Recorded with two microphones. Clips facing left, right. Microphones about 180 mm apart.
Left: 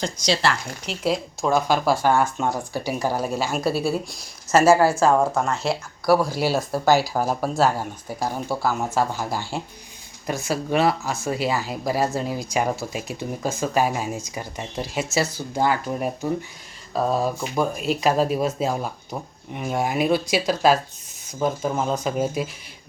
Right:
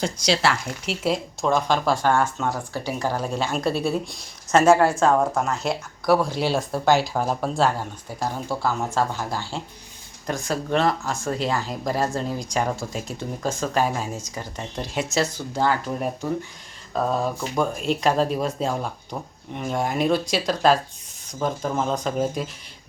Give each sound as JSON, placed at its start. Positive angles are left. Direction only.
{"t": 0.0, "sound": "speech", "side_deg": -5}